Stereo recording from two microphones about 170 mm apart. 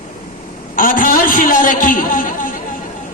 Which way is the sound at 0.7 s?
55° left (ahead or behind).